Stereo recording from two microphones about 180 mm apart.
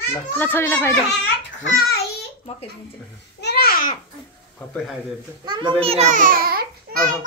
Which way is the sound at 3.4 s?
60° left (ahead or behind).